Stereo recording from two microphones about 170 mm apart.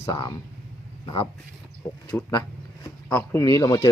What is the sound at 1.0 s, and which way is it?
Speech, 30° left (ahead or behind).